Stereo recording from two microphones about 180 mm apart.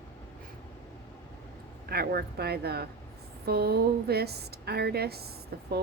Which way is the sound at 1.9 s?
60° right (ahead or behind).